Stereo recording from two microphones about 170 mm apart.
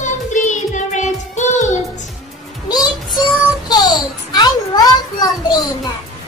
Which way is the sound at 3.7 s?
25° left (ahead or behind).